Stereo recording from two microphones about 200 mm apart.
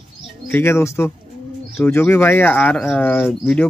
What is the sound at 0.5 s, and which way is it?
Speech, 10° left (ahead or behind).